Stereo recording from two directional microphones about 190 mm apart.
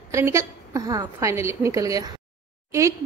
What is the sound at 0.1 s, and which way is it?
A woman's voice, 15° right (ahead or behind).